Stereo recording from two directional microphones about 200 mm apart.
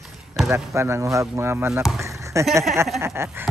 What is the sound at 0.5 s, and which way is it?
Speech, 15° right (ahead or behind).